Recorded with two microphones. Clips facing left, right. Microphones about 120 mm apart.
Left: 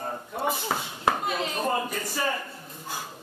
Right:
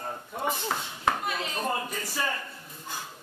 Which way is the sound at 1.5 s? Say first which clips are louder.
Left 3 dB; 5° left (ahead or behind).